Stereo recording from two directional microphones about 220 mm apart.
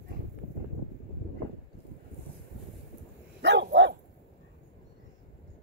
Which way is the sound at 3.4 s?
55° right (ahead or behind).